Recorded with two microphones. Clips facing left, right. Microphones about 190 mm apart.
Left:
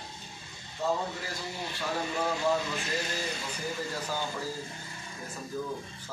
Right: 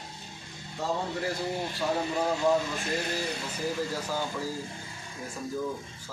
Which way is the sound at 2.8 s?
55° right (ahead or behind).